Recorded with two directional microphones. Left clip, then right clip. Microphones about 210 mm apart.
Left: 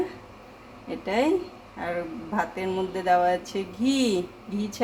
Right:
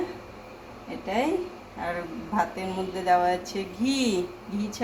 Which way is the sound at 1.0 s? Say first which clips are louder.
Left 2 dB; 25° left (ahead or behind).